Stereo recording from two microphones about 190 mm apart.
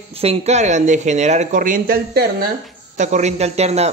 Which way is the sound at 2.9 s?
35° right (ahead or behind).